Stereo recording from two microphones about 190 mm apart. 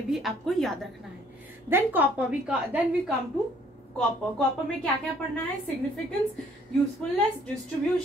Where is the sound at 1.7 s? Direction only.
10° right (ahead or behind).